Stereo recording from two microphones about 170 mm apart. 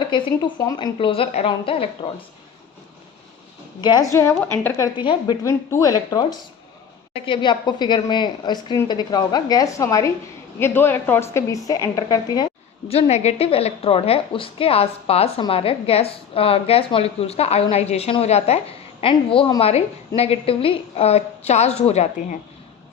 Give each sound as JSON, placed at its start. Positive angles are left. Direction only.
{"t": 0.0, "sound": "a woman's voice", "side_deg": 30}
{"t": 3.8, "sound": "a woman's voice", "side_deg": 25}
{"t": 4.9, "sound": "a woman's voice", "side_deg": 25}
{"t": 12.9, "sound": "a woman's voice", "side_deg": 40}